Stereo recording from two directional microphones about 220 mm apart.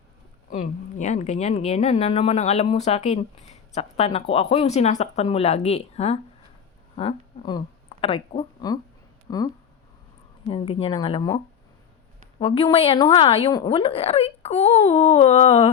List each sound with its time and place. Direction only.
0.5 s a woman's voice: 30° left (ahead or behind)
10.5 s a woman's voice: 25° left (ahead or behind)
12.4 s a woman's voice: 25° left (ahead or behind)